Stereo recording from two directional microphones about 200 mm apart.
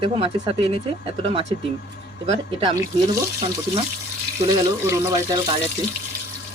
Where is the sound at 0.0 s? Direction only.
25° right (ahead or behind).